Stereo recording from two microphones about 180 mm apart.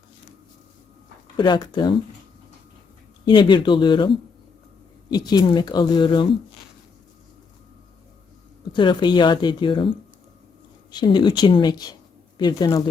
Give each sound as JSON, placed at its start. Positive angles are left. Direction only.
{"t": 1.4, "sound": "speech", "side_deg": 25}
{"t": 3.2, "sound": "speech", "side_deg": 25}
{"t": 5.1, "sound": "speech", "side_deg": 20}
{"t": 8.7, "sound": "speech", "side_deg": 25}
{"t": 10.9, "sound": "speech", "side_deg": 25}